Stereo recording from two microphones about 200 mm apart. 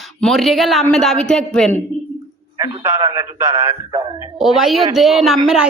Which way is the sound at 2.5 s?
20° right (ahead or behind).